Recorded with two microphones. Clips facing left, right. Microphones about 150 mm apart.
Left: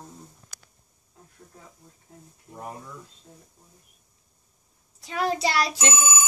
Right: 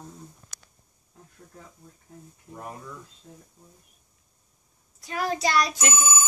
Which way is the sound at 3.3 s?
10° left (ahead or behind).